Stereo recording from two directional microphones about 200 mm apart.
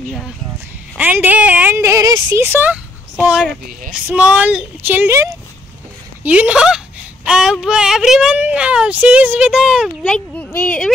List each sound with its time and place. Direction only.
0.9 s speech: 10° right (ahead or behind); by 10.9 s 10° left (ahead or behind)